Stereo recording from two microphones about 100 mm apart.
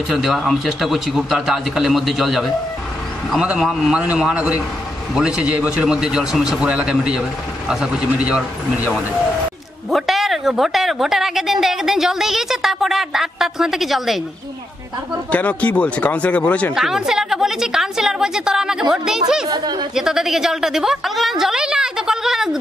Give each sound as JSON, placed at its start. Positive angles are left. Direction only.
{"t": 0.1, "sound": "a woman's voice", "side_deg": 0}
{"t": 9.8, "sound": "a woman's voice", "side_deg": 0}
{"t": 15.3, "sound": "speech", "side_deg": 15}
{"t": 16.7, "sound": "a woman's voice", "side_deg": -5}
{"t": 19.4, "sound": "a woman's voice", "side_deg": -45}
{"t": 20.0, "sound": "a woman's voice", "side_deg": -5}